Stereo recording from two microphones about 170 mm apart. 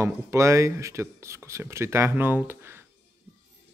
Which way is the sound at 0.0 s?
15° right (ahead or behind).